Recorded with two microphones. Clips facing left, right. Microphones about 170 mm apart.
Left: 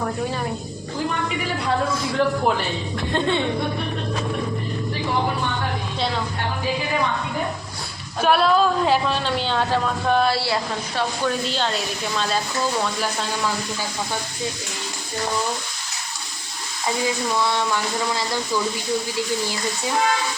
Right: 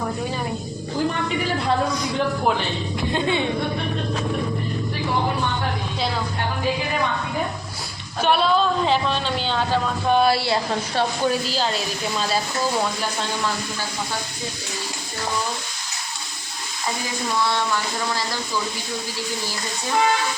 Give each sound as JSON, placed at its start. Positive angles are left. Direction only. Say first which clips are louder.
{"t": 2.0, "sound": "a sound", "louder": "left 2 dB", "side_deg": 0}
{"t": 3.1, "sound": "speech", "louder": "left 1 dB", "side_deg": -10}
{"t": 8.2, "sound": "speech", "louder": "left 2 dB", "side_deg": 5}
{"t": 10.3, "sound": "speech", "louder": "right 1 dB", "side_deg": -20}
{"t": 10.7, "sound": "speech", "louder": "right 2 dB", "side_deg": -30}
{"t": 11.3, "sound": "speech", "louder": "right 1 dB", "side_deg": -5}